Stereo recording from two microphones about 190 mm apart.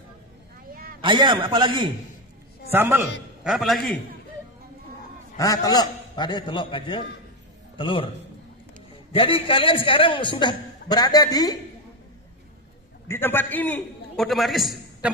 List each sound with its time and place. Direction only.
0.7 s vehicle: 50° right (ahead or behind)
1.0 s a man's voice: 25° right (ahead or behind)
2.7 s a man's voice: 10° right (ahead or behind)
5.4 s a man's voice: 20° left (ahead or behind)
9.1 s a man's voice: 30° left (ahead or behind)
13.1 s a man's voice: 10° left (ahead or behind)